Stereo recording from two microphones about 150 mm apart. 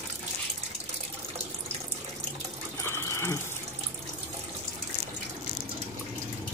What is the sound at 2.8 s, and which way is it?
Water, 20° left (ahead or behind).